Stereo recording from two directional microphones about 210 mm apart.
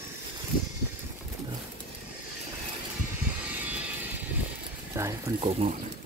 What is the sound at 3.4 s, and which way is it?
Vehicle, 5° right (ahead or behind).